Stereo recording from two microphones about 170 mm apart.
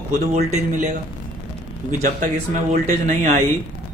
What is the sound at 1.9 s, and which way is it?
Speech, 50° right (ahead or behind).